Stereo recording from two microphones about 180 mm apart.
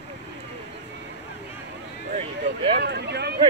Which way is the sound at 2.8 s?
65° right (ahead or behind).